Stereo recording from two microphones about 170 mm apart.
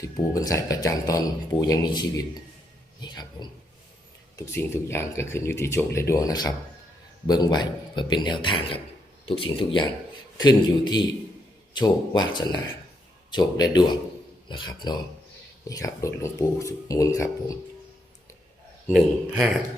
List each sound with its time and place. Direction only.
0.0 s speech: 20° left (ahead or behind)
4.4 s speech: 15° left (ahead or behind)
18.9 s a man's voice: 10° right (ahead or behind)